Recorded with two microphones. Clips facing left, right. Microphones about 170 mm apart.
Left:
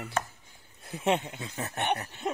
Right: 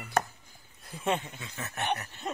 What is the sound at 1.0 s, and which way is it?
Speech, 20° left (ahead or behind).